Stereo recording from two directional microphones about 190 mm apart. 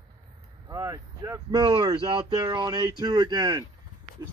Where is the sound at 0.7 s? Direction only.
20° right (ahead or behind).